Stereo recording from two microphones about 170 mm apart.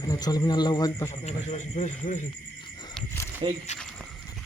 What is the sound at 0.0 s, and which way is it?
Speech, 20° left (ahead or behind).